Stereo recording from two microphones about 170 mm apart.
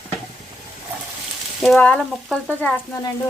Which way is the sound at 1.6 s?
5° left (ahead or behind).